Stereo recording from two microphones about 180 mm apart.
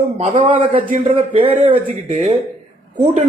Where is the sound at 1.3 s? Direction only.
30° right (ahead or behind).